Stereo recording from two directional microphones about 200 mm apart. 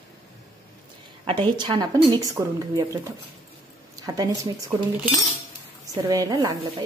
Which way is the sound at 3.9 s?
20° right (ahead or behind).